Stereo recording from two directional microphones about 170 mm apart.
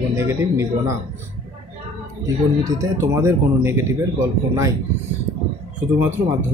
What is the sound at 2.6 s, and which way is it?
Speech, 20° right (ahead or behind).